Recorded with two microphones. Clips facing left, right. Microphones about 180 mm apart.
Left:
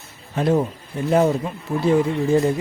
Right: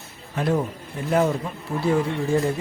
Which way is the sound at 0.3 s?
25° left (ahead or behind).